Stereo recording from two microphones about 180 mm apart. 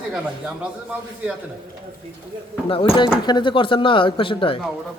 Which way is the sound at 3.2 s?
25° left (ahead or behind).